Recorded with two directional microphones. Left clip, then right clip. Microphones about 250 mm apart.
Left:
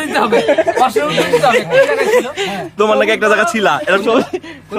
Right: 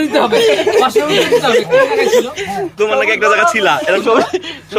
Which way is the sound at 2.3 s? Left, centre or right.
Left.